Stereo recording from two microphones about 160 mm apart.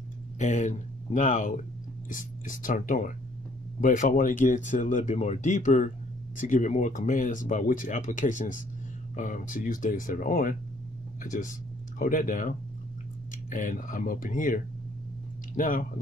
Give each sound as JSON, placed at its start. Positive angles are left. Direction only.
{"t": 0.4, "sound": "speech", "side_deg": 50}